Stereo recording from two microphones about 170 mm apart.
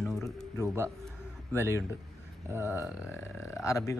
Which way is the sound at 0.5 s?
15° right (ahead or behind).